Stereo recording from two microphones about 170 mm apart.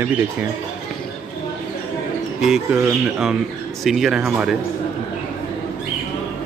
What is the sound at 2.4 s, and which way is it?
Speech, 5° right (ahead or behind).